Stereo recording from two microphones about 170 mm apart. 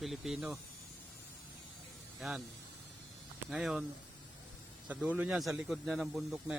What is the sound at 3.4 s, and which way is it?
Speech, 5° right (ahead or behind).